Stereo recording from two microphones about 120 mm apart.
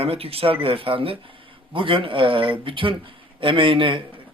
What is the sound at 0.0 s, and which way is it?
A man's voice, 55° right (ahead or behind).